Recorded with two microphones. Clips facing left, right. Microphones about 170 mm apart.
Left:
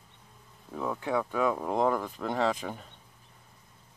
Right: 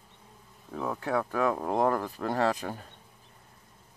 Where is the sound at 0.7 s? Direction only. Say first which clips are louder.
Even; 5° right (ahead or behind).